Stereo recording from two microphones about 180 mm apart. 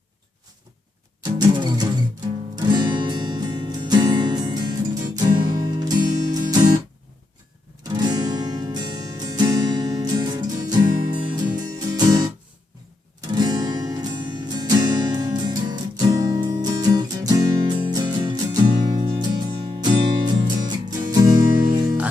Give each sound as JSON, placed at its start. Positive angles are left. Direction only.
{"t": 1.2, "sound": "music", "side_deg": -25}
{"t": 7.9, "sound": "music", "side_deg": -25}